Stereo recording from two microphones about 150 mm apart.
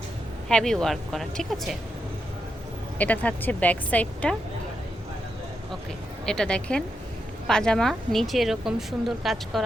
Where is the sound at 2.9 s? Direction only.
10° left (ahead or behind).